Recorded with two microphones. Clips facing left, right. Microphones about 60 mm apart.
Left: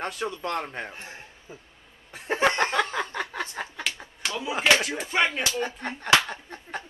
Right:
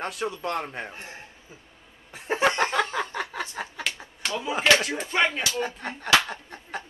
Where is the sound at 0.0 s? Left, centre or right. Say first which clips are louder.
Right 1 dB; centre.